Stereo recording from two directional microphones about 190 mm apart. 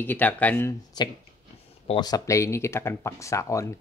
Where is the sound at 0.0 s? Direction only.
10° left (ahead or behind).